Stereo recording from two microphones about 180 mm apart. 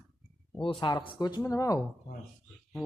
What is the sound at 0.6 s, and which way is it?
Speech, 30° left (ahead or behind).